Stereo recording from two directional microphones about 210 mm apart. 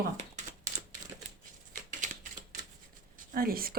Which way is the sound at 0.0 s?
35° right (ahead or behind).